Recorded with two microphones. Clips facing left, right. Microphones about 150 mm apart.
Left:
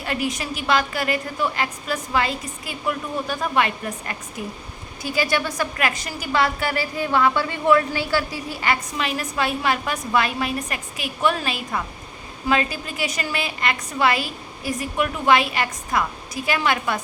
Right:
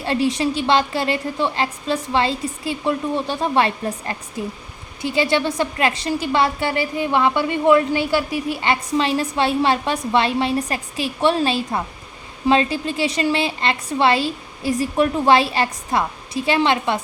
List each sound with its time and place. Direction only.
0.0 s a woman's voice: 30° right (ahead or behind)